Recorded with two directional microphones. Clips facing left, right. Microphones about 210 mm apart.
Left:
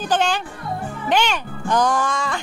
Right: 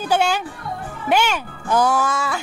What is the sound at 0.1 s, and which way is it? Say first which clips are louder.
Speech: right 2 dB; 10° right (ahead or behind).